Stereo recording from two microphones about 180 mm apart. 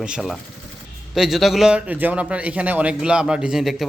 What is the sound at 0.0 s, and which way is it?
A man's voice, 5° right (ahead or behind).